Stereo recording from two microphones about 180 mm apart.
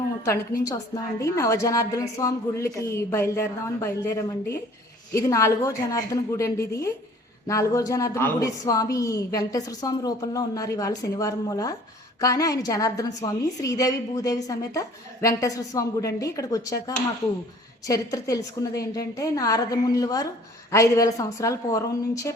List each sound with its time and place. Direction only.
0.3 s a woman's voice: 15° left (ahead or behind)
17.8 s a woman's voice: 20° left (ahead or behind)